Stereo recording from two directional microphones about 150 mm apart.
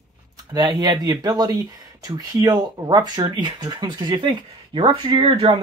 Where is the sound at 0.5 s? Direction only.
25° right (ahead or behind).